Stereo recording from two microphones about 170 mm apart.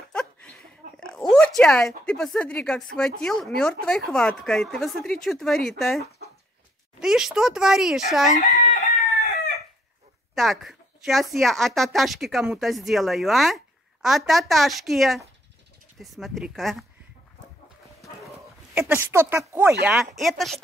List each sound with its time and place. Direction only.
0.1 s a sound: 5° left (ahead or behind)
1.3 s a woman's voice: 5° left (ahead or behind)
8.4 s chicken: 40° left (ahead or behind)
10.3 s a woman's voice: centre (ahead or behind)
18.8 s a woman's voice: 10° right (ahead or behind)